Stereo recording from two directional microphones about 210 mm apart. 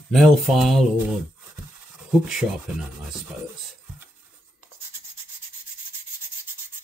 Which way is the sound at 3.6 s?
Centre (ahead or behind).